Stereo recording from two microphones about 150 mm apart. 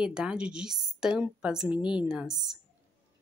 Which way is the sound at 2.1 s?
5° right (ahead or behind).